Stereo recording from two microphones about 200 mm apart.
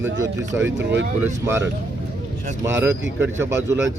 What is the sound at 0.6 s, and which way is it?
Speech, 65° right (ahead or behind).